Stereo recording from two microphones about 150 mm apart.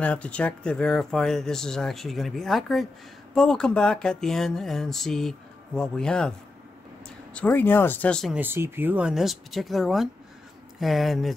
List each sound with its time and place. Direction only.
0.0 s speech: 10° left (ahead or behind)
7.3 s speech: 10° left (ahead or behind)
8.4 s speech: 15° right (ahead or behind)